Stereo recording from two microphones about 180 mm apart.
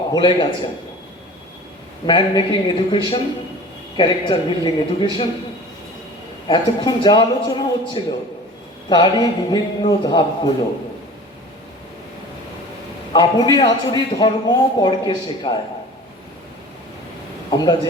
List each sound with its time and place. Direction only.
0.1 s a man's voice: 25° left (ahead or behind)
2.0 s a man's voice: 25° left (ahead or behind)
6.5 s a man's voice: 25° left (ahead or behind)
13.1 s a man's voice: 25° left (ahead or behind)
17.5 s a man's voice: 25° left (ahead or behind)